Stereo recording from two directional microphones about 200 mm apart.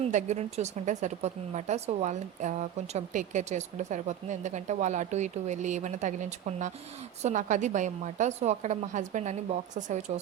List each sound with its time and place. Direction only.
0.0 s a woman's voice: 35° right (ahead or behind)